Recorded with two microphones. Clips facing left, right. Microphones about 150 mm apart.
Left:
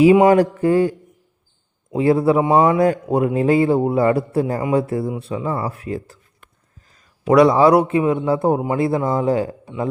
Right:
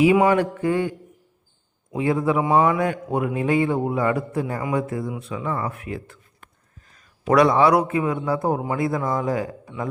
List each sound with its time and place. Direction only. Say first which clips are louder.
0.0 s a man's voice: left 5 dB; 35° left (ahead or behind)